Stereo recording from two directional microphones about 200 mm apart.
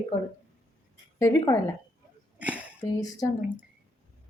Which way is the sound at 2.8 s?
20° left (ahead or behind).